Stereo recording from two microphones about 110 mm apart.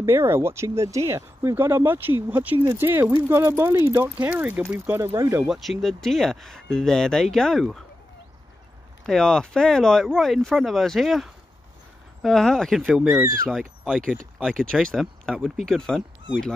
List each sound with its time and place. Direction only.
0.0 s speech: 20° right (ahead or behind)
5.4 s speech: centre (ahead or behind)
9.0 s speech: 5° left (ahead or behind)